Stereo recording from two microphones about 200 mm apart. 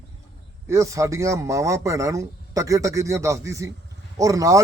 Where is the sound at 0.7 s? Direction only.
15° right (ahead or behind).